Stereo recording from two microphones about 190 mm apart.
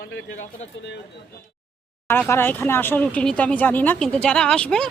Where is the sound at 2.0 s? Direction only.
10° left (ahead or behind).